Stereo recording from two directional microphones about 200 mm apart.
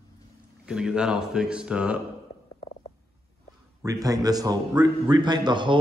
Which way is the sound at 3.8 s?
15° right (ahead or behind).